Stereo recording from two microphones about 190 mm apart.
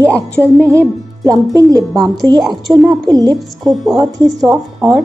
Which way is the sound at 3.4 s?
Centre (ahead or behind).